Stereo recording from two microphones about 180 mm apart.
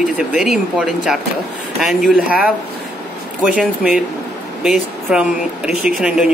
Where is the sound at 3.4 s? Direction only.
5° right (ahead or behind).